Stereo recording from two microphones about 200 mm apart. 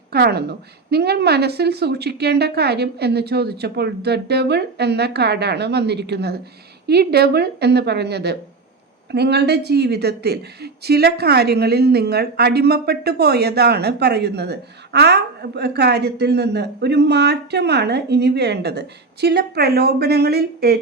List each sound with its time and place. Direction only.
0.1 s speech: 55° right (ahead or behind)